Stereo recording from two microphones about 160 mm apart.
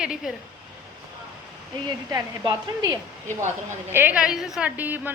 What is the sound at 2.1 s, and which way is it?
Speech, 25° right (ahead or behind).